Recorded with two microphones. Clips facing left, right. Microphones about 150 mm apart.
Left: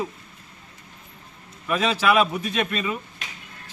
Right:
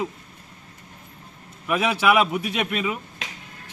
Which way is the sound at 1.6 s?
10° right (ahead or behind).